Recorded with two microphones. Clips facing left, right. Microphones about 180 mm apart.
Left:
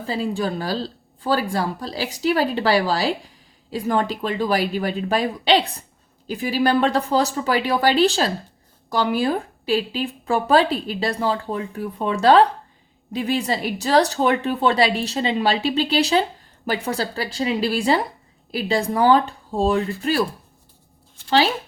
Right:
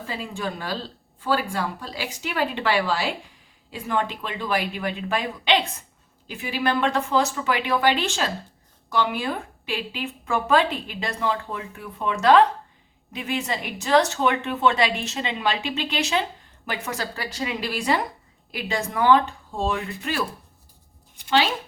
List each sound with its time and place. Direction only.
0.1 s speech: 35° left (ahead or behind)
21.2 s speech: 35° left (ahead or behind)